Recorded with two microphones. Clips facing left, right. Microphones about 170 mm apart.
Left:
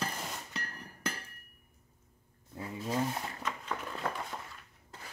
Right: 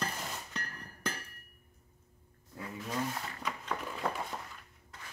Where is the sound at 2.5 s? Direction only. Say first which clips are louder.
Left 4 dB; 25° left (ahead or behind).